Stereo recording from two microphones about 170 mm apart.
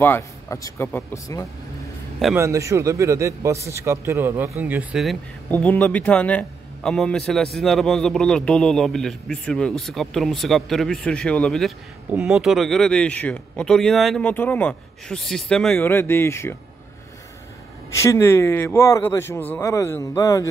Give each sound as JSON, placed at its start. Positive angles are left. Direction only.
{"t": 0.0, "sound": "a man's voice", "side_deg": 15}
{"t": 2.3, "sound": "a man's voice", "side_deg": -15}
{"t": 5.5, "sound": "a man's voice", "side_deg": 10}
{"t": 15.8, "sound": "a man's voice", "side_deg": 15}
{"t": 17.9, "sound": "a man's voice", "side_deg": 15}